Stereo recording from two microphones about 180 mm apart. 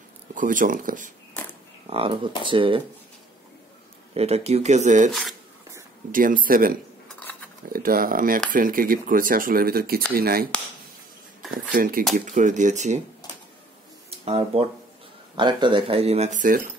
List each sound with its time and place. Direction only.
0.3 s speech: 45° right (ahead or behind)
1.9 s speech: 30° right (ahead or behind)
4.1 s speech: 35° right (ahead or behind)
6.1 s speech: 50° right (ahead or behind)
11.7 s speech: 50° right (ahead or behind)
14.1 s speech: 35° right (ahead or behind)